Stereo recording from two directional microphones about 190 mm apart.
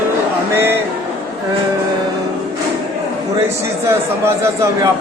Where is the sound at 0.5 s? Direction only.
10° right (ahead or behind).